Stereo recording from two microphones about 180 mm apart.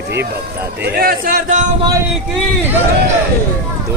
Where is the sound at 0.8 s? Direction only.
55° right (ahead or behind).